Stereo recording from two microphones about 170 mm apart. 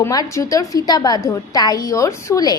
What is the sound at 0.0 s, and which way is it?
A woman's voice, 20° left (ahead or behind).